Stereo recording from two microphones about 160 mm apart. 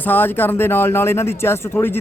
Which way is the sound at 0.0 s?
10° left (ahead or behind).